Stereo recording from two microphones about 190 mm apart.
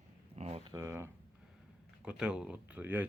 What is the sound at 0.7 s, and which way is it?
Speech, 15° right (ahead or behind).